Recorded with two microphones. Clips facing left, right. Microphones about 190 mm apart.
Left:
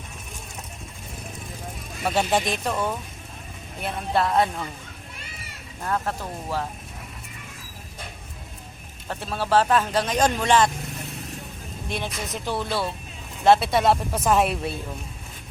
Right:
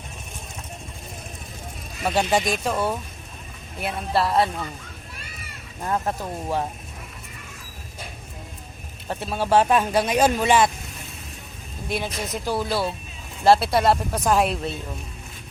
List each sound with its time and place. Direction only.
2.0 s speech: centre (ahead or behind)
5.8 s speech: 15° right (ahead or behind)
9.0 s speech: 15° right (ahead or behind)
11.9 s speech: 5° right (ahead or behind)